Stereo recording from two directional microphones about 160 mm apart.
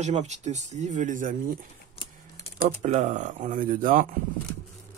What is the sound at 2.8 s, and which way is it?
Speech, 45° right (ahead or behind).